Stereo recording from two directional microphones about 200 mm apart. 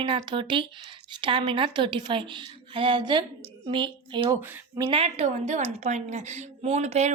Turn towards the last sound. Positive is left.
turn(degrees=-35)  # may be behind; listen again after turning